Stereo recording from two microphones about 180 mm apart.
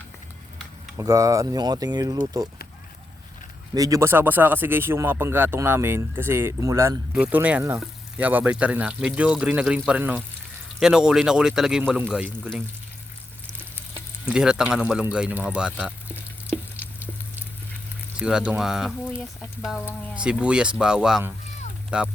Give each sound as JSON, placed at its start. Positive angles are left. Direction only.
{"t": 0.9, "sound": "speech", "side_deg": -15}
{"t": 3.8, "sound": "a man's voice", "side_deg": -20}
{"t": 14.3, "sound": "a man's voice", "side_deg": -5}
{"t": 18.2, "sound": "a man's voice", "side_deg": -5}
{"t": 20.1, "sound": "a man's voice", "side_deg": -5}